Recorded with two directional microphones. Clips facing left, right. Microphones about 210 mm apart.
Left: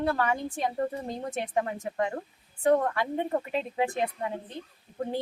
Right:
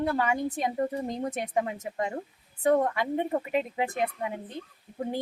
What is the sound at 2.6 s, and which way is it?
A woman's voice, 20° right (ahead or behind).